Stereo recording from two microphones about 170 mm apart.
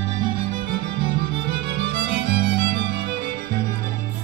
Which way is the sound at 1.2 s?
70° right (ahead or behind).